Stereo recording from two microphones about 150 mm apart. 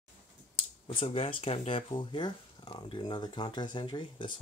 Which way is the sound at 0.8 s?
40° left (ahead or behind).